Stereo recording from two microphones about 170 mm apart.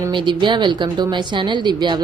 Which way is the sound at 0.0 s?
25° right (ahead or behind).